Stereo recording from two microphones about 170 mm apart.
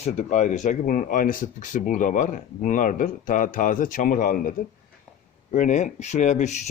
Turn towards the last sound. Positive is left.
turn(degrees=40)  # may be behind; listen again after turning